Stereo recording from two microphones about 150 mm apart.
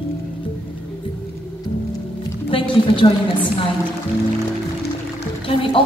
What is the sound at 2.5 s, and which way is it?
Music, 35° left (ahead or behind).